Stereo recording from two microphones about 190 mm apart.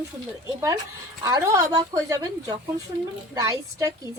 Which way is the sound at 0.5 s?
20° right (ahead or behind).